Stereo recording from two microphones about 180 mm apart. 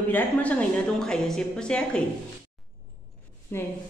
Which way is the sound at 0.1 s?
10° left (ahead or behind).